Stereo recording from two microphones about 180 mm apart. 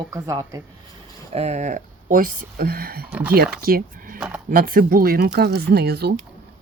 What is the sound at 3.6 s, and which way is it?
Speech, 55° right (ahead or behind).